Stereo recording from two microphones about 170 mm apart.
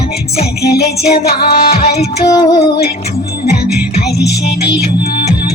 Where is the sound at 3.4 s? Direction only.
65° left (ahead or behind).